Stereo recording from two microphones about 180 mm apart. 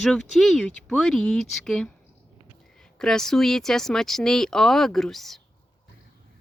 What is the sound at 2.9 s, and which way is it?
Speech, 5° left (ahead or behind).